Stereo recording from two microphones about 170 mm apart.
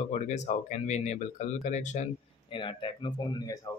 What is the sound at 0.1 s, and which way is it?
Speech, 45° left (ahead or behind).